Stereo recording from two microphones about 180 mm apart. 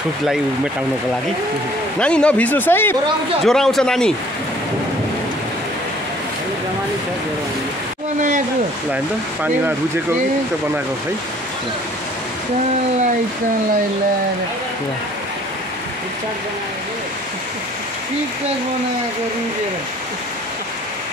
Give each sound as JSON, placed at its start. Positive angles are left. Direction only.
{"t": 2.0, "sound": "speech", "side_deg": 5}
{"t": 8.9, "sound": "speech", "side_deg": -10}